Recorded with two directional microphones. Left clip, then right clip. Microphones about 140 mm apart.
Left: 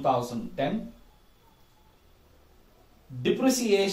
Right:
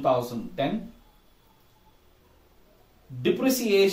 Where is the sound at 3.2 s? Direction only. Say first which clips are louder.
Right 1 dB; 25° right (ahead or behind).